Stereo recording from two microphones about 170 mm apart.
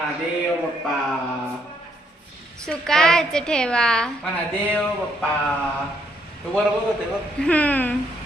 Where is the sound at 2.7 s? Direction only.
5° left (ahead or behind).